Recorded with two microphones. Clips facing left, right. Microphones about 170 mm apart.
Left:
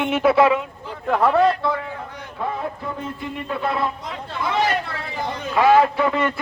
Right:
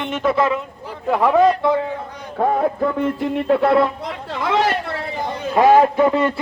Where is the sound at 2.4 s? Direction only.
55° right (ahead or behind).